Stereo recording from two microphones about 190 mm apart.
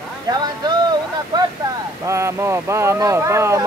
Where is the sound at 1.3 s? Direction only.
20° right (ahead or behind).